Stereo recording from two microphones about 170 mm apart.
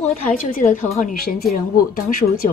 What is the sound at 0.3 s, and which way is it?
Speech, 55° left (ahead or behind).